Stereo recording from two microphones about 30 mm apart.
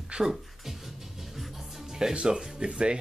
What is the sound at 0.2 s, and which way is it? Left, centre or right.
Speech, centre.